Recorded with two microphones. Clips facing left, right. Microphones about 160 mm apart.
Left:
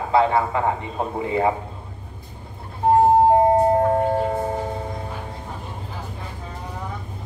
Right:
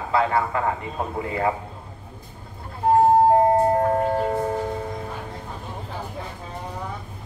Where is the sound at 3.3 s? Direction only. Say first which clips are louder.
Left 1 dB; 25° left (ahead or behind).